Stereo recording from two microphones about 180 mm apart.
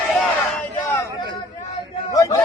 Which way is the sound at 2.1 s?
20° left (ahead or behind).